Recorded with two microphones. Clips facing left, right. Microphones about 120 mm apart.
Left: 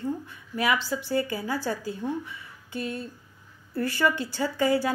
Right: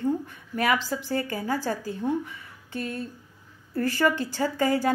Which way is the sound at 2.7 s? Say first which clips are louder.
Even; 40° right (ahead or behind).